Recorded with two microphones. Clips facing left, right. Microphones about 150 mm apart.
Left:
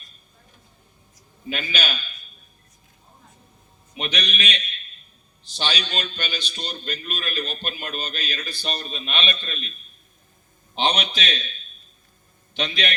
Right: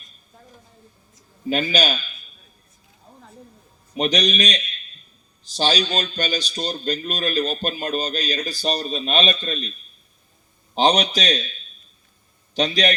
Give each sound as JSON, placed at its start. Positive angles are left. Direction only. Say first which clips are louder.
{"t": 1.5, "sound": "a man's voice", "louder": "right 8 dB", "side_deg": -40}
{"t": 3.9, "sound": "a man's voice", "louder": "right 9 dB", "side_deg": -40}
{"t": 10.8, "sound": "a man's voice", "louder": "right 6 dB", "side_deg": -40}
{"t": 12.5, "sound": "a man's voice", "louder": "right 7 dB", "side_deg": -40}